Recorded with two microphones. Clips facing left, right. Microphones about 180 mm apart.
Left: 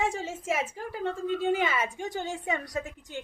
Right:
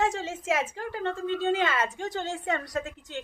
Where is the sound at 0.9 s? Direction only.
5° left (ahead or behind).